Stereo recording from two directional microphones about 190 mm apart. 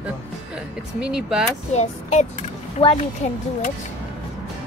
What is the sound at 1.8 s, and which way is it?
A child's voice, 40° left (ahead or behind).